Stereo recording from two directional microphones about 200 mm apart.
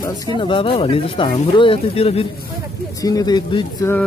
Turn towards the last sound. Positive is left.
turn(degrees=20)  # may be behind; listen again after turning